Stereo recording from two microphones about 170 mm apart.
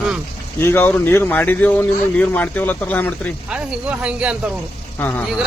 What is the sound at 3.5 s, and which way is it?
Speech, 5° right (ahead or behind).